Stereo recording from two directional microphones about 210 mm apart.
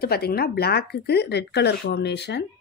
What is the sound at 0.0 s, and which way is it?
Speech, 45° left (ahead or behind).